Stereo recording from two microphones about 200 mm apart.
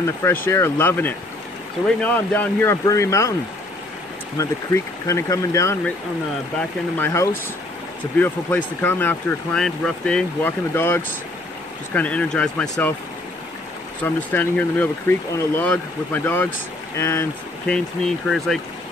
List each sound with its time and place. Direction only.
0.0 s speech: 15° left (ahead or behind)
4.4 s speech: 15° left (ahead or behind)
7.0 s speech: 15° left (ahead or behind)
12.6 s speech: 15° left (ahead or behind)
14.0 s speech: 10° left (ahead or behind)